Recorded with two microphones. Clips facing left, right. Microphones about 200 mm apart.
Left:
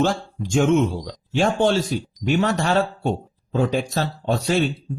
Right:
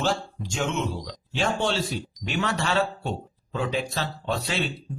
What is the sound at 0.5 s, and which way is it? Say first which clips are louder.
Speech: left 10 dB; 50° left (ahead or behind).